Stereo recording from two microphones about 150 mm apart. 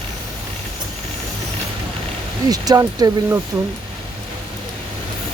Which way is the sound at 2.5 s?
25° right (ahead or behind).